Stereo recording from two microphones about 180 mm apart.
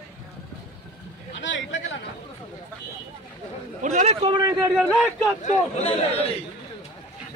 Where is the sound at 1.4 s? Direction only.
90° left.